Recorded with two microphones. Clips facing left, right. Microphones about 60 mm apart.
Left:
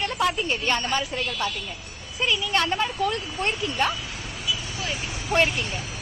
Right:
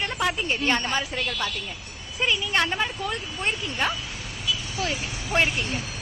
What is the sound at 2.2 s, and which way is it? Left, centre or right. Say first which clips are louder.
Speech: even; right.